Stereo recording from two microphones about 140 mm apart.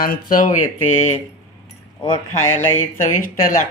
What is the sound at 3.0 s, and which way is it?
Speech, 75° left (ahead or behind).